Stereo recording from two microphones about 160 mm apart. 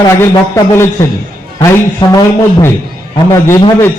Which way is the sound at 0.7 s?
15° left (ahead or behind).